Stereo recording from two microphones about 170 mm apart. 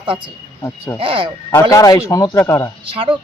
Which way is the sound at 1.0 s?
30° right (ahead or behind).